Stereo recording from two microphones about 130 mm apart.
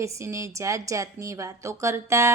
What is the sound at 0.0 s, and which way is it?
A woman's voice, 25° right (ahead or behind).